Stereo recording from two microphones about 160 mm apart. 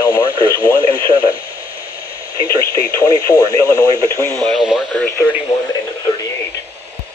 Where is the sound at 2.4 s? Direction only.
25° left (ahead or behind).